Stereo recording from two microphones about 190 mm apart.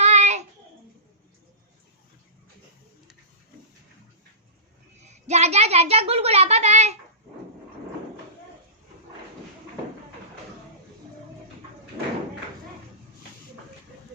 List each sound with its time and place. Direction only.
0.0 s child singing: 35° right (ahead or behind)
4.9 s speech: 35° right (ahead or behind)